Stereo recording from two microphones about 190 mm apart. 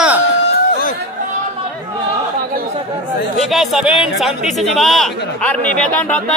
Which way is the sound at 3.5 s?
5° right (ahead or behind).